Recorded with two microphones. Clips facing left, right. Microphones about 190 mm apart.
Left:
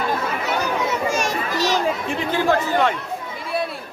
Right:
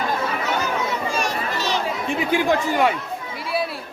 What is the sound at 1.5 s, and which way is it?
Chatter, 40° left (ahead or behind).